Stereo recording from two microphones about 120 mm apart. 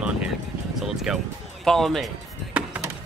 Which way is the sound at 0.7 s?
5° right (ahead or behind).